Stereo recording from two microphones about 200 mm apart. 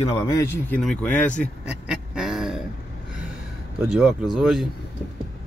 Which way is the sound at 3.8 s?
5° right (ahead or behind).